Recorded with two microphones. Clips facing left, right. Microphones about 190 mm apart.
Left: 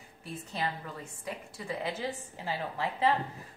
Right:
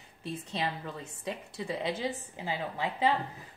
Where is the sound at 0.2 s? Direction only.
25° right (ahead or behind).